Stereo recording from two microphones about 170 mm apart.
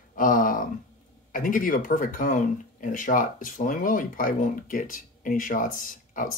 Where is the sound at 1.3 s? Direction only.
55° left (ahead or behind).